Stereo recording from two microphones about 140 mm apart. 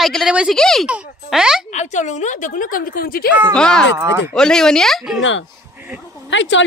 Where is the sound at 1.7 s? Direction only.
60° left (ahead or behind); by 3.3 s 90° left.